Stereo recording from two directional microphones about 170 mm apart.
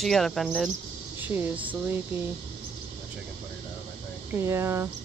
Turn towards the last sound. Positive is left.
turn(degrees=-15)  # may be behind; listen again after turning